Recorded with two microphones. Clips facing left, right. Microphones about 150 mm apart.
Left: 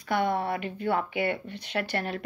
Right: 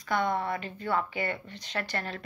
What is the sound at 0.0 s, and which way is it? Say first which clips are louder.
A woman's voice: left 2 dB; 60° left (ahead or behind).